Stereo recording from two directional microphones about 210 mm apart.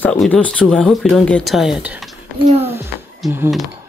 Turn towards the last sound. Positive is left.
turn(degrees=-5)  # may be behind; listen again after turning